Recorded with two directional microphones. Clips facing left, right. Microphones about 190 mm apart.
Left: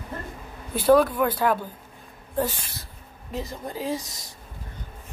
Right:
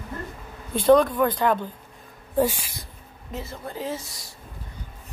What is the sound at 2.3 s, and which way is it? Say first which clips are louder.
Speech: right 4 dB; 10° right (ahead or behind).